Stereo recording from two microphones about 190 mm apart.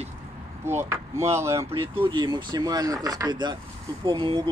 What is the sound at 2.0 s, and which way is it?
Speech, 25° right (ahead or behind).